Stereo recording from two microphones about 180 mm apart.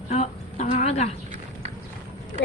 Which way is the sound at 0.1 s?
35° left (ahead or behind).